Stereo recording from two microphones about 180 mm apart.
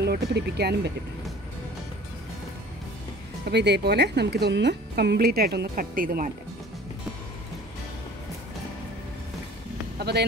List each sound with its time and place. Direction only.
0.0 s speech: 65° right (ahead or behind)
3.4 s speech: 70° right (ahead or behind); by 6.3 s 50° right (ahead or behind)
9.9 s a sound: 65° right (ahead or behind)